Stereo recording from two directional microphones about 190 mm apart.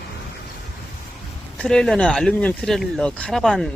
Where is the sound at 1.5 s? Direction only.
5° left (ahead or behind).